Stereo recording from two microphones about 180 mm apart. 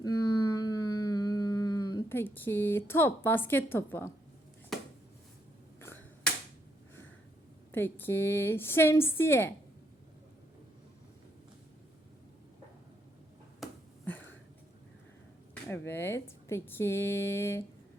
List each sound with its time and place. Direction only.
0.0 s humming: 20° left (ahead or behind)
4.7 s a sound: centre (ahead or behind)
5.8 s finger snapping: 10° left (ahead or behind)
7.7 s a woman's voice: 10° left (ahead or behind)
14.0 s a sound: 10° left (ahead or behind)
15.7 s a woman's voice: 10° left (ahead or behind)